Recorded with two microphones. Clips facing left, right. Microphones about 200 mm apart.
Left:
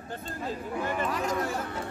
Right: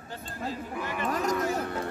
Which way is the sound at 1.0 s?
45° right (ahead or behind).